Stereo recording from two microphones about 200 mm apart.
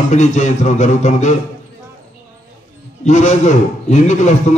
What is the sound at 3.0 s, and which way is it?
A man's voice, 35° left (ahead or behind).